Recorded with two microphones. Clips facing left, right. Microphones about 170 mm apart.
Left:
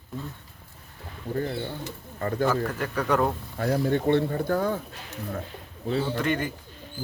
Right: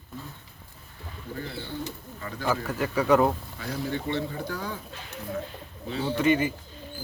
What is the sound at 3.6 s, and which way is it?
Speech, 55° left (ahead or behind).